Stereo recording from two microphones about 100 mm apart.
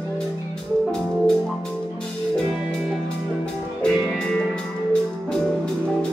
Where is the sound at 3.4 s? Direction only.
5° left (ahead or behind).